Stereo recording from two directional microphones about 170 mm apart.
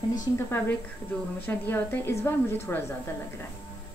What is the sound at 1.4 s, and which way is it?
A woman's voice, 10° left (ahead or behind).